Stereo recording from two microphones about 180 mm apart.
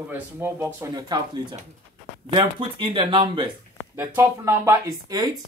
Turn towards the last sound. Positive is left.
turn(degrees=-20)  # may be behind; listen again after turning